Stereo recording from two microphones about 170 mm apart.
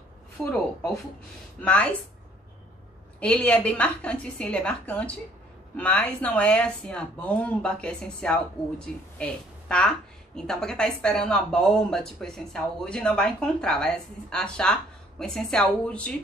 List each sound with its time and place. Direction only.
0.4 s speech: 5° left (ahead or behind)
1.6 s a woman's voice: 10° left (ahead or behind)
3.2 s a woman's voice: 5° left (ahead or behind)